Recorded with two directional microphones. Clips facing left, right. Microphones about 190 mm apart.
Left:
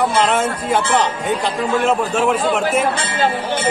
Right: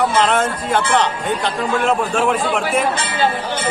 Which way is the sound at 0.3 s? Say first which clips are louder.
Even; 5° left (ahead or behind).